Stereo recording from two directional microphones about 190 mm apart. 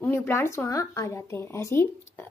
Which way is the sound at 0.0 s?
10° left (ahead or behind).